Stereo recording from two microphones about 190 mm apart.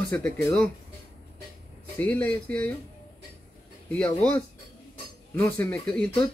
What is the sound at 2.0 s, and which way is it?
Speech, 10° left (ahead or behind).